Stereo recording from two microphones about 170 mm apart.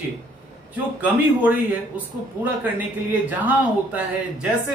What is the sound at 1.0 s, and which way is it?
Speech, 10° right (ahead or behind).